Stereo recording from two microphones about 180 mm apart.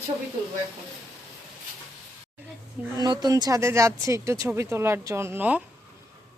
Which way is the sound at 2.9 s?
25° right (ahead or behind).